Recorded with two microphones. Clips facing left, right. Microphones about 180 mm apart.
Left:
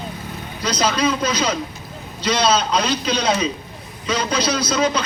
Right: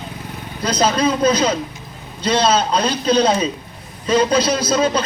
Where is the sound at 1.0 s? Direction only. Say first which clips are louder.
Right 4 dB; 30° right (ahead or behind).